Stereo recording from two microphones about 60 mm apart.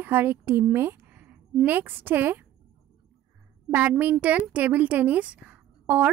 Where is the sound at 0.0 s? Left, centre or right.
Right.